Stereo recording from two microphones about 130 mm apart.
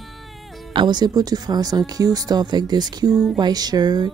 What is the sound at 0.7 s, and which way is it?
Speech, 35° right (ahead or behind).